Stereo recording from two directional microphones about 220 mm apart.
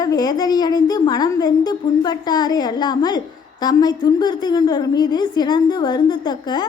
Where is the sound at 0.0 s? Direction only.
15° left (ahead or behind).